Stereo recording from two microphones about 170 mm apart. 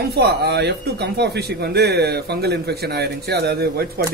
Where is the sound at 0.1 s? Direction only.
70° right (ahead or behind).